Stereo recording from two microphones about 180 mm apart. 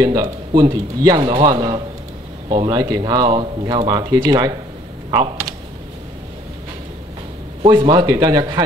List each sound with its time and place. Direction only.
0.0 s speech: 20° right (ahead or behind)
7.6 s speech: 25° right (ahead or behind)